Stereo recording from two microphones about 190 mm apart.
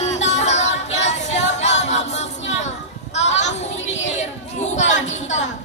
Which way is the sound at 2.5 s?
35° left (ahead or behind).